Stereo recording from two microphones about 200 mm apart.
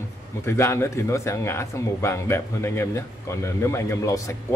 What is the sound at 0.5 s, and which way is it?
Speech, 15° left (ahead or behind).